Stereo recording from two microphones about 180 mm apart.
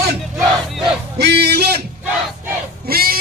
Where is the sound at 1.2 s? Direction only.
65° right (ahead or behind).